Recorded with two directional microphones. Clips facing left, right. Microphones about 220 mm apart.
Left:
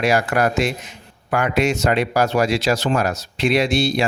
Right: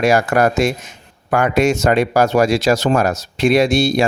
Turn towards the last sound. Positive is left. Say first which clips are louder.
# right 4 dB
turn(degrees=-45)  # may be behind; listen again after turning